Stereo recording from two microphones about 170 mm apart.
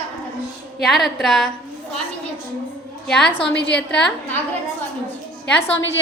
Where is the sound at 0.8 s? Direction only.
Centre (ahead or behind).